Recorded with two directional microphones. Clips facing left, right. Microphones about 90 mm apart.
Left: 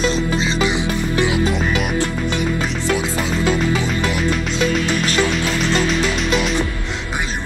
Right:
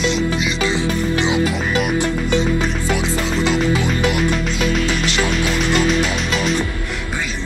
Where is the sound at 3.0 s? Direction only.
90° right.